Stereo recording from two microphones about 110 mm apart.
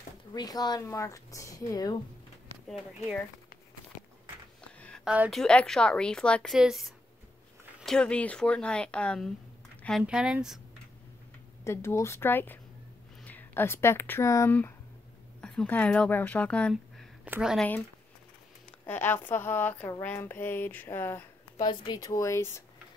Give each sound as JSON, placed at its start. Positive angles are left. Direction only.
{"t": 0.3, "sound": "speech", "side_deg": 35}
{"t": 4.7, "sound": "a sound", "side_deg": 10}
{"t": 5.0, "sound": "a woman's voice", "side_deg": -10}
{"t": 5.3, "sound": "speech", "side_deg": 5}
{"t": 6.5, "sound": "a woman's voice", "side_deg": -5}
{"t": 10.0, "sound": "speech", "side_deg": -10}
{"t": 11.6, "sound": "speech", "side_deg": 25}
{"t": 15.4, "sound": "speech", "side_deg": 10}
{"t": 17.2, "sound": "speech", "side_deg": -10}
{"t": 18.7, "sound": "speech", "side_deg": 15}
{"t": 21.5, "sound": "speech", "side_deg": 40}